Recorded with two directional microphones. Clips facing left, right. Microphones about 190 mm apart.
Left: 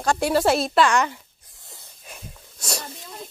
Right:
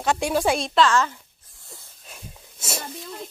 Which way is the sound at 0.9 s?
15° left (ahead or behind).